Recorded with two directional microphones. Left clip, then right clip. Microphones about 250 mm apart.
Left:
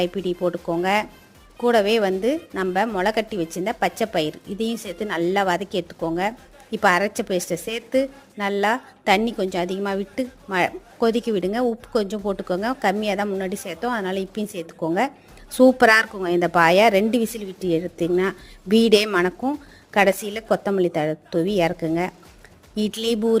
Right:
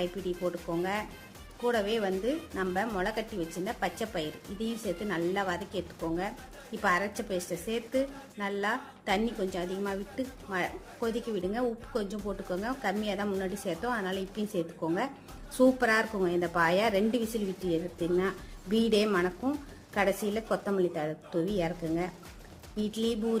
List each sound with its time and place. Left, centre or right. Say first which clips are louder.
0.0 s a woman's voice: left 10 dB; left